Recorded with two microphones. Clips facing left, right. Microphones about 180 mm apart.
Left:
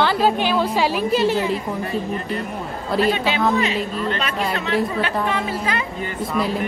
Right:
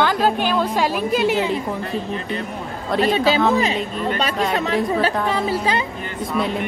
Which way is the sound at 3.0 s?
35° right (ahead or behind).